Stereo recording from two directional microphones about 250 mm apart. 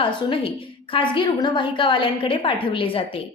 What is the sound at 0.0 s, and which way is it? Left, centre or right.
A woman's voice, left.